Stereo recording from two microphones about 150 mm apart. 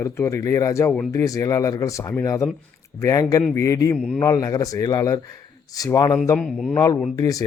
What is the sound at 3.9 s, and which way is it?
Speech, 10° left (ahead or behind).